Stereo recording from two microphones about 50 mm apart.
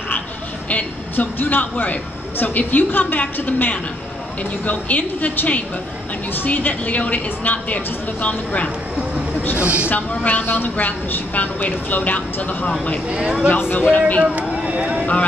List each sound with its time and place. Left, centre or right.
0.7 s a man's voice: left
9.6 s speech: right
9.8 s a man's voice: left
10.4 s a man's voice: left
13.1 s speech: centre
13.5 s a man's voice: left
14.6 s vehicle: centre